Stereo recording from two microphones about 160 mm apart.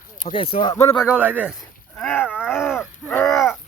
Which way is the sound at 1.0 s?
5° right (ahead or behind).